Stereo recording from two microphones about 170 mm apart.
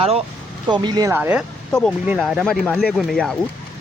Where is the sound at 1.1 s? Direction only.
10° right (ahead or behind).